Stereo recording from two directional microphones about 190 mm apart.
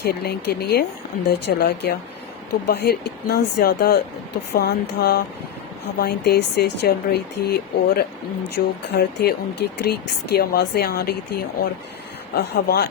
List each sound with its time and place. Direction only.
0.0 s speech: 55° left (ahead or behind)